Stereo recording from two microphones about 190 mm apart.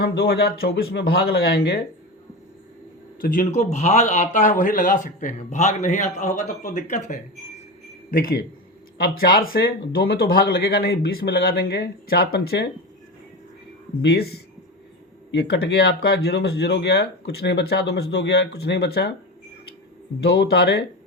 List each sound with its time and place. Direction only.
0.2 s speech: 55° left (ahead or behind)
3.2 s a man's voice: 45° left (ahead or behind)
14.0 s speech: 60° left (ahead or behind)
20.4 s speech: 60° left (ahead or behind)